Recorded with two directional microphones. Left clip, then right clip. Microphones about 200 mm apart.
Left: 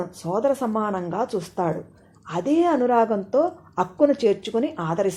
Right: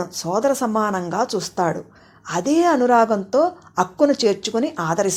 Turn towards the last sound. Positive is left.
turn(degrees=-20)  # may be behind; listen again after turning